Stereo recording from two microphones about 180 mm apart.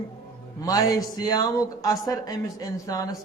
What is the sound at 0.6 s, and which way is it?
Speech, 20° left (ahead or behind).